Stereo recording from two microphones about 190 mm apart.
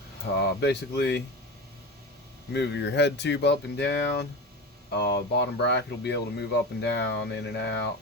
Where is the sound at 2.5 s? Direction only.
65° left (ahead or behind).